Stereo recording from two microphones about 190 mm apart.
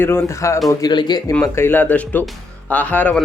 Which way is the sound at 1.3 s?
10° left (ahead or behind).